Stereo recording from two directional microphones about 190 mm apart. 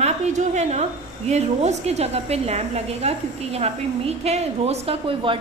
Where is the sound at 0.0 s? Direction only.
35° right (ahead or behind).